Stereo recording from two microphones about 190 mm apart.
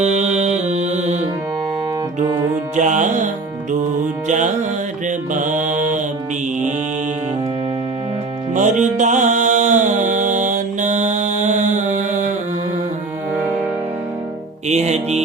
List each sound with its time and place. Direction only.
0.0 s music: 35° right (ahead or behind)
2.7 s music: 40° right (ahead or behind)
4.3 s music: 40° right (ahead or behind)
5.0 s mantra: 40° right (ahead or behind)
8.5 s music: 40° right (ahead or behind)
14.7 s music: 35° right (ahead or behind)